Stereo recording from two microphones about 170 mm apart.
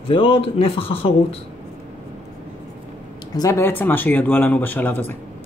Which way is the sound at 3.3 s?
20° left (ahead or behind).